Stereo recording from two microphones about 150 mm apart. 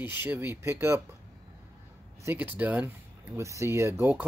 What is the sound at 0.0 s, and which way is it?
Speech, 15° right (ahead or behind).